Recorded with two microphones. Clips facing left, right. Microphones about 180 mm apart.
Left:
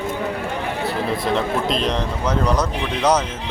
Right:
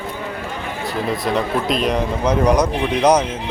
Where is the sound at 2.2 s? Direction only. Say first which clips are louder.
Right 5 dB; 15° right (ahead or behind).